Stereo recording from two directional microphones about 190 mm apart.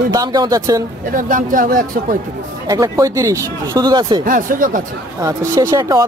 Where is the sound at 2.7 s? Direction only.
15° right (ahead or behind).